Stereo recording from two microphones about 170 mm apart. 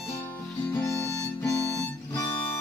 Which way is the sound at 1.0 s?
20° left (ahead or behind).